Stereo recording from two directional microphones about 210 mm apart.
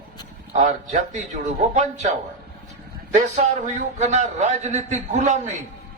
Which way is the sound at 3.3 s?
35° right (ahead or behind).